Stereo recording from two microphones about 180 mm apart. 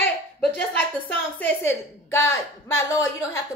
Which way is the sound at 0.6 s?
10° left (ahead or behind).